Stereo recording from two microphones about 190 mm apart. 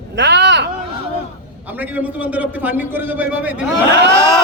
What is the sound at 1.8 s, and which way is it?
A man's voice, 10° right (ahead or behind).